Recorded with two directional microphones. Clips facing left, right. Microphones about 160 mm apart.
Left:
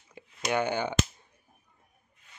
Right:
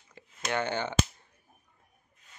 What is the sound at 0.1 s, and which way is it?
Speech, 15° left (ahead or behind).